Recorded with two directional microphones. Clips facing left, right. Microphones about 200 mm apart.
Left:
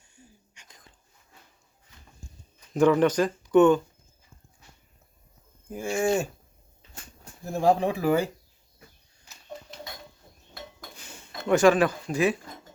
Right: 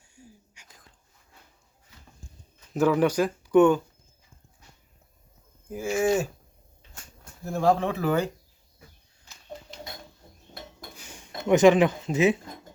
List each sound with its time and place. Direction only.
0.0 s whispering: 10° right (ahead or behind)
2.7 s speech: 5° right (ahead or behind)
5.7 s speech: 5° right (ahead or behind)
7.5 s speech: 15° left (ahead or behind)
10.9 s speech: 10° right (ahead or behind)